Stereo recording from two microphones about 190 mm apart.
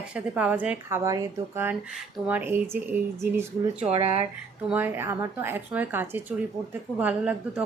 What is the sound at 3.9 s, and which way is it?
Speech, 30° right (ahead or behind).